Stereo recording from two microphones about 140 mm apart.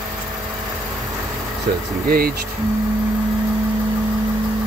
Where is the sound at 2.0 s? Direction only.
90° right.